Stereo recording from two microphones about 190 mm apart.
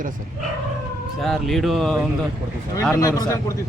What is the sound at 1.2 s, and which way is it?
Speech, centre (ahead or behind).